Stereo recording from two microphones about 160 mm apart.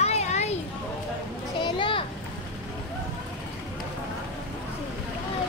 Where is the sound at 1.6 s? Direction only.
30° left (ahead or behind).